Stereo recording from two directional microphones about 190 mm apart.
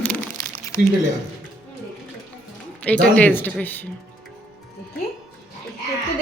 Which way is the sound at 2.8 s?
5° left (ahead or behind).